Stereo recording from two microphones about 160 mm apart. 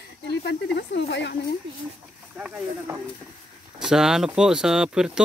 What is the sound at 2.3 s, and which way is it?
Speech, 5° right (ahead or behind).